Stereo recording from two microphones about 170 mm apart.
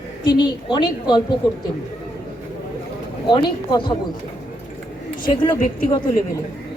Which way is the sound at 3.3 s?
25° left (ahead or behind).